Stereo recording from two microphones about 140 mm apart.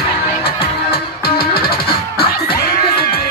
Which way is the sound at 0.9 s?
90° left.